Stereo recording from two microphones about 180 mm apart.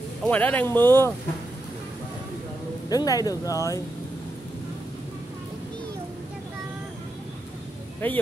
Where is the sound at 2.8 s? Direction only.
20° left (ahead or behind).